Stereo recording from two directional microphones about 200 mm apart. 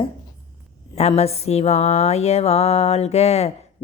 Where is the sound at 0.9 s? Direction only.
30° left (ahead or behind).